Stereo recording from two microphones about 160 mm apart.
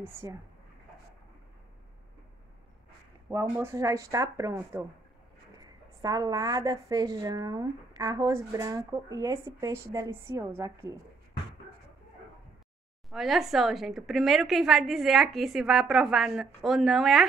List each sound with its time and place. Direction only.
0.0 s a woman's voice: 20° right (ahead or behind)
3.3 s a woman's voice: 15° right (ahead or behind)
13.1 s a woman's voice: centre (ahead or behind)